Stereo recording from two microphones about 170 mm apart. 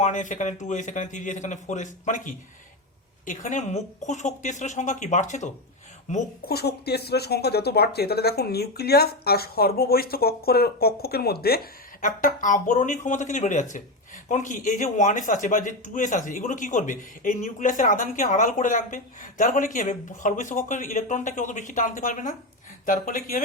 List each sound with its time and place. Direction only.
0.0 s speech: 45° left (ahead or behind)
6.5 s speech: 70° left (ahead or behind); by 23.4 s 50° left (ahead or behind)